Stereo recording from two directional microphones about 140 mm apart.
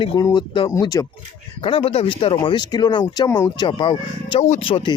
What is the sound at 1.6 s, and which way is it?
Speech, 40° left (ahead or behind).